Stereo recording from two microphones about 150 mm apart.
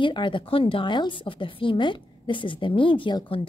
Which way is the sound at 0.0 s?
30° left (ahead or behind).